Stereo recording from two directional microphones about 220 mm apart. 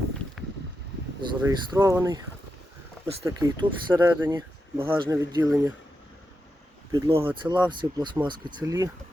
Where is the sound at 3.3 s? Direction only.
15° right (ahead or behind).